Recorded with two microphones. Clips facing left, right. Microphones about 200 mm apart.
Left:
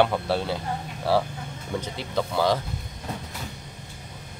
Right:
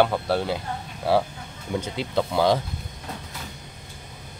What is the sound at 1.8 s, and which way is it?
Speech, 15° right (ahead or behind).